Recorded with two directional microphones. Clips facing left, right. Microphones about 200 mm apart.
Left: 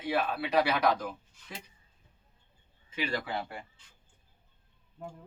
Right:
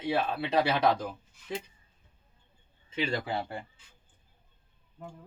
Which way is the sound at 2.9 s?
25° right (ahead or behind).